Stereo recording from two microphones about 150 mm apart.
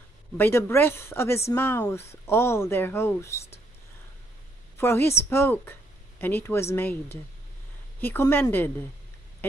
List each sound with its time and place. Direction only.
0.4 s speech: 15° left (ahead or behind)
4.7 s speech: 15° left (ahead or behind)
9.4 s duck: 15° left (ahead or behind)